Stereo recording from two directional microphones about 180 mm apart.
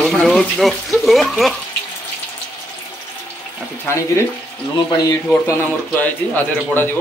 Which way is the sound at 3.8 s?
15° left (ahead or behind).